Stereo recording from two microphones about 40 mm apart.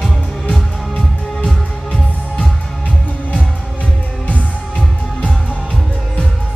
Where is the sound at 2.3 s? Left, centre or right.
Left.